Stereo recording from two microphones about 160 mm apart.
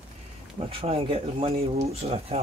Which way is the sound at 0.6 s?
35° right (ahead or behind).